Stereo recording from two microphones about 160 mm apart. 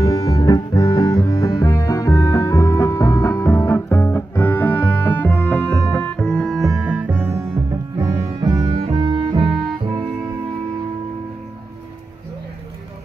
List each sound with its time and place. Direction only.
0.0 s music: 20° left (ahead or behind); by 9.6 s 30° right (ahead or behind)